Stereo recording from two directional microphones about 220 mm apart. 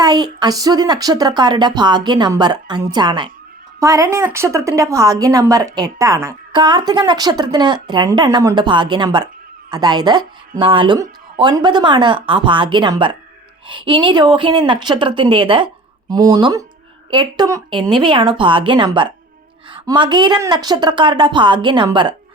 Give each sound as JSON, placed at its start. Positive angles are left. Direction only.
{"t": 0.0, "sound": "a woman's voice", "side_deg": -20}